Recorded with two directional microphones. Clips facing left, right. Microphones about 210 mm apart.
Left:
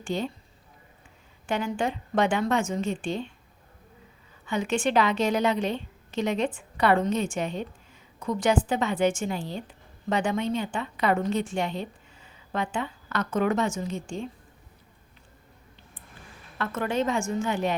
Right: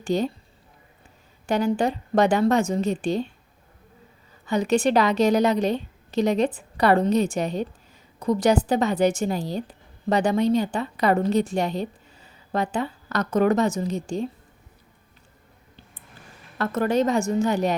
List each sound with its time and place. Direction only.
0.0 s a woman's voice: 40° right (ahead or behind)
1.5 s a woman's voice: 40° right (ahead or behind)
4.4 s a woman's voice: 40° right (ahead or behind)
16.6 s a woman's voice: 40° right (ahead or behind)